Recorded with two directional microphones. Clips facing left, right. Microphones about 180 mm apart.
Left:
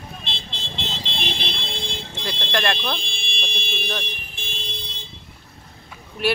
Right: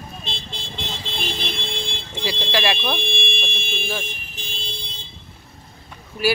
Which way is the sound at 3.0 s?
60° right (ahead or behind).